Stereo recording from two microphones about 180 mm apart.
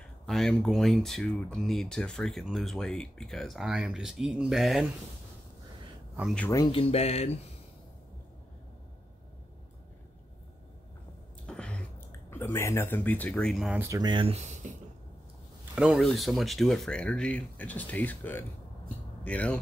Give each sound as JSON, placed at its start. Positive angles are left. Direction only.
{"t": 0.3, "sound": "speech", "side_deg": 5}
{"t": 6.5, "sound": "speech", "side_deg": 25}
{"t": 11.4, "sound": "a sound", "side_deg": 5}
{"t": 13.8, "sound": "speech", "side_deg": -20}
{"t": 15.7, "sound": "speech", "side_deg": -5}